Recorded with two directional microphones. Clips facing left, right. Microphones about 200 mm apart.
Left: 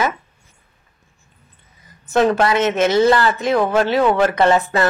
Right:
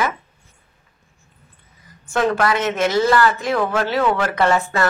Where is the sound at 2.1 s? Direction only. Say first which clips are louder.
Left 3 dB; 25° left (ahead or behind).